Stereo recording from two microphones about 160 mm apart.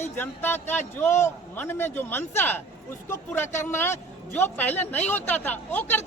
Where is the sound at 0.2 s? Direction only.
15° left (ahead or behind).